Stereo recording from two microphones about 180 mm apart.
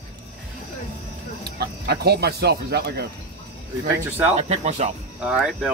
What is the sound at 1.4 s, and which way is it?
Speech, 65° right (ahead or behind).